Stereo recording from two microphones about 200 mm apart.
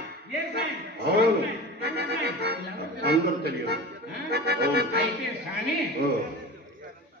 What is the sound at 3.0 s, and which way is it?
Speech, 50° right (ahead or behind).